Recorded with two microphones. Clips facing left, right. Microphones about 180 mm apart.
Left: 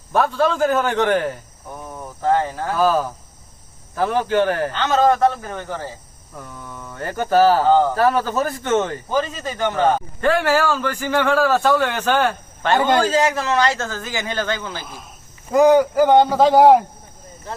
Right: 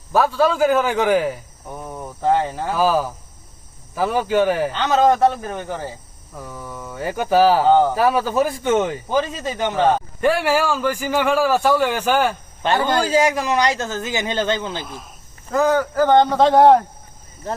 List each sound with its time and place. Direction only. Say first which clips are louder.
0.1 s speech: right 1 dB; 5° right (ahead or behind)
12.7 s a man's voice: left 3 dB; 20° left (ahead or behind)
13.0 s a man's voice: even; 10° right (ahead or behind)
15.4 s a man's voice: left 5 dB; 15° left (ahead or behind)